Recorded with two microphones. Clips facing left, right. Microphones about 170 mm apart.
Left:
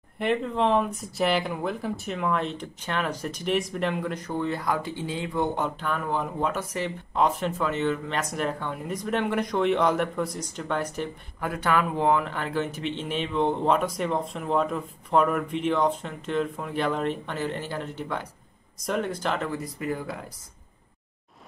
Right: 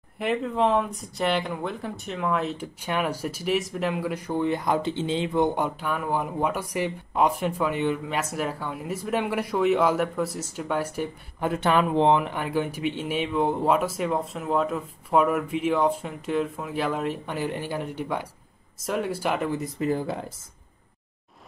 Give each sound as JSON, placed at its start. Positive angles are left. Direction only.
{"t": 0.2, "sound": "speech", "side_deg": 0}
{"t": 11.3, "sound": "speech", "side_deg": -25}